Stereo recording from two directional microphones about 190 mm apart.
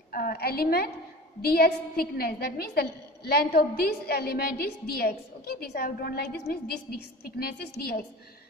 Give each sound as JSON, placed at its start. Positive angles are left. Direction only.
{"t": 0.1, "sound": "a woman's voice", "side_deg": 50}